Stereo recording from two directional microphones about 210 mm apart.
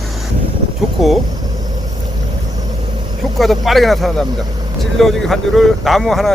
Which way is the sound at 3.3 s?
Centre (ahead or behind).